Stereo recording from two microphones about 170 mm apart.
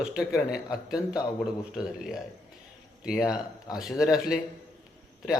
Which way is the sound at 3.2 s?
20° left (ahead or behind).